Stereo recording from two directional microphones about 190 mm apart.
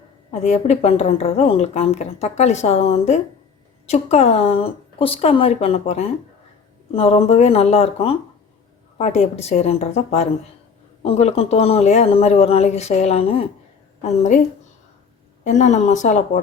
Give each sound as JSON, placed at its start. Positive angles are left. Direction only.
{"t": 0.3, "sound": "a woman's voice", "side_deg": 35}
{"t": 15.4, "sound": "a woman's voice", "side_deg": 40}